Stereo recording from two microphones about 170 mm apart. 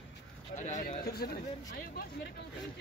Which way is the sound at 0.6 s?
45° left (ahead or behind).